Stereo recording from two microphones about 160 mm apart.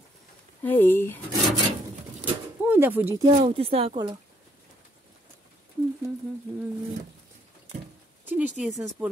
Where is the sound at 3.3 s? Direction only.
35° right (ahead or behind).